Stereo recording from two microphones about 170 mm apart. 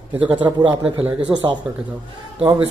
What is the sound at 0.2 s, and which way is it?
Speech, 10° right (ahead or behind).